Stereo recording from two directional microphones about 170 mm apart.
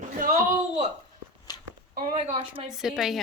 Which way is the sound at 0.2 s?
50° right (ahead or behind).